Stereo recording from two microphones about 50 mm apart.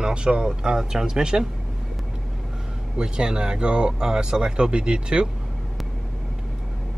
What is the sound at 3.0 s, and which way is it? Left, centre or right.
Speech, centre.